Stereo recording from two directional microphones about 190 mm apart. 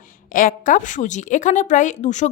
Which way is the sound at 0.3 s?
45° left (ahead or behind).